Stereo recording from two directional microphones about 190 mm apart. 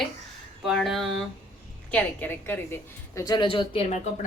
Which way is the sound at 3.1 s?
20° left (ahead or behind).